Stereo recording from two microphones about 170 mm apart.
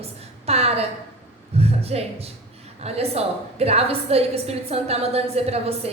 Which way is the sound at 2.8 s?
35° right (ahead or behind).